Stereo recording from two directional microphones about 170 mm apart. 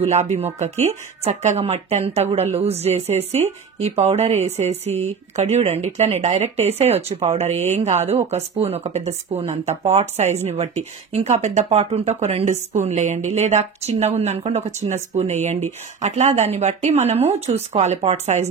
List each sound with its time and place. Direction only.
0.0 s speech: 40° right (ahead or behind)